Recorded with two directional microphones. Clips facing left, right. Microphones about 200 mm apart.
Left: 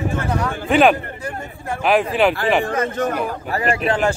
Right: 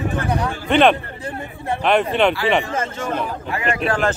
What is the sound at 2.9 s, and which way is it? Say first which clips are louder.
Speech: left 3 dB; 40° left (ahead or behind).